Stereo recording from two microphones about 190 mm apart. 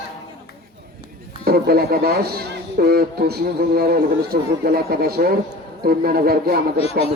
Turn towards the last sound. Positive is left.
turn(degrees=30)  # may be behind; listen again after turning